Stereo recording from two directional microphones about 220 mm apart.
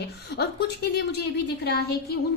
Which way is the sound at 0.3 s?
50° left (ahead or behind).